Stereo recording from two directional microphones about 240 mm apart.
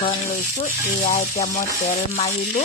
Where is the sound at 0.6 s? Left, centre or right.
Left.